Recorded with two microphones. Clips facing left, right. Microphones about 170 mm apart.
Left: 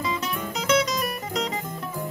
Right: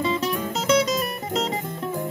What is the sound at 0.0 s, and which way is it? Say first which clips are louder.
Music: right 5 dB; 30° right (ahead or behind).